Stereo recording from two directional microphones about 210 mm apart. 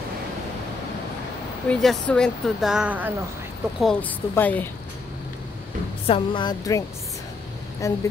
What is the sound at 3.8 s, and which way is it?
Speech, 5° left (ahead or behind).